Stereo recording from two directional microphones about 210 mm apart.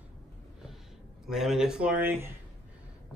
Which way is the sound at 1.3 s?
Centre (ahead or behind).